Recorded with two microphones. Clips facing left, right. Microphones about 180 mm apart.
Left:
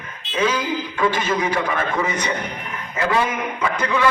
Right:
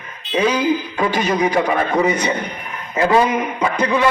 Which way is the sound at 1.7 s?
40° right (ahead or behind).